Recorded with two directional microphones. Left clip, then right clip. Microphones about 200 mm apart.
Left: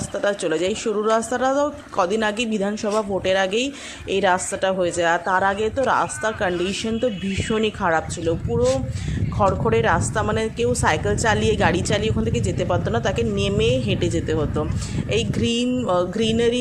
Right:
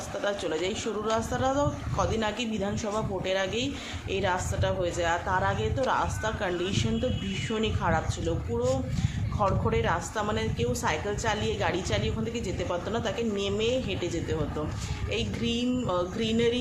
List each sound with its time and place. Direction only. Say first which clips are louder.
0.2 s a woman's voice: left 8 dB; 35° left (ahead or behind)